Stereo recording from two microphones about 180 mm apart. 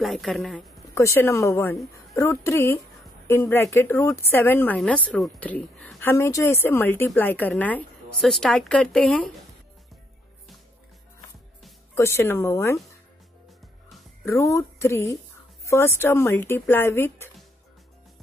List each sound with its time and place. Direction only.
0.0 s a woman's voice: centre (ahead or behind)
0.9 s speech: 15° left (ahead or behind)
11.9 s speech: 15° left (ahead or behind)
14.2 s speech: 15° left (ahead or behind)